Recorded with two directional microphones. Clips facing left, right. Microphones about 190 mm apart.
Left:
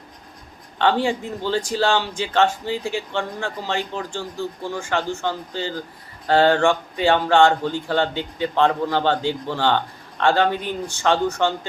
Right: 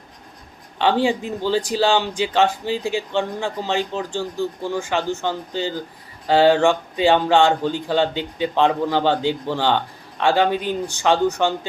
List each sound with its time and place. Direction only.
0.8 s speech: 15° right (ahead or behind)